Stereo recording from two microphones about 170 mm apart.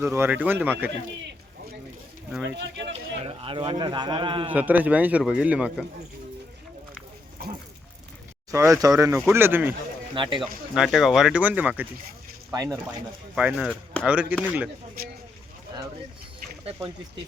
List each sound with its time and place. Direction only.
0.0 s speech: 15° right (ahead or behind)
2.3 s speech: 10° right (ahead or behind)
2.9 s a man's voice: 35° right (ahead or behind)
4.5 s speech: 10° right (ahead or behind)
7.4 s a sound: 65° right (ahead or behind)
8.4 s speech: 20° right (ahead or behind)
10.2 s speech: 30° right (ahead or behind)
10.4 s speech: centre (ahead or behind)
12.5 s speech: 20° right (ahead or behind)
13.3 s speech: 5° right (ahead or behind)
14.1 s speech: 10° right (ahead or behind)
15.7 s bird: 20° right (ahead or behind)